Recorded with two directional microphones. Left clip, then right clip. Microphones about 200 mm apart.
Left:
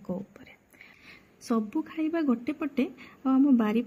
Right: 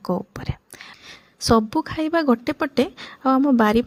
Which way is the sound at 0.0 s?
45° right (ahead or behind).